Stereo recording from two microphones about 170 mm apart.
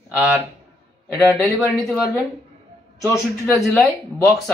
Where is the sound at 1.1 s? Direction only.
10° left (ahead or behind).